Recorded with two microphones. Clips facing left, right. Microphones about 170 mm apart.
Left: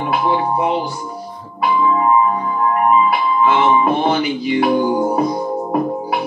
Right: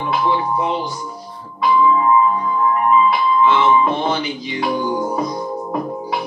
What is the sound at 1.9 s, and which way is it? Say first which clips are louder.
Music: even; 50° left (ahead or behind).